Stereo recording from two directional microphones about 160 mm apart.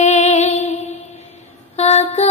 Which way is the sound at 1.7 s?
40° left (ahead or behind).